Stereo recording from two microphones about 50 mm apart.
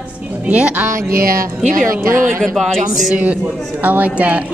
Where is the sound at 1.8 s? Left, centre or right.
Centre.